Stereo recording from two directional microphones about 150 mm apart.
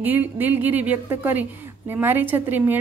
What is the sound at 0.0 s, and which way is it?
A woman's voice, 10° right (ahead or behind).